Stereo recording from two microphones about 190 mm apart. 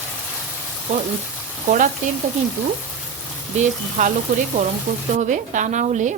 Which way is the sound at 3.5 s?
40° right (ahead or behind).